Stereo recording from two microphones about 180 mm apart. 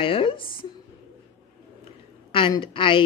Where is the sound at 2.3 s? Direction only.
30° left (ahead or behind).